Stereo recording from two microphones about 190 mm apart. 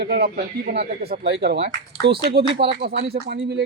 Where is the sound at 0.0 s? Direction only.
60° right (ahead or behind).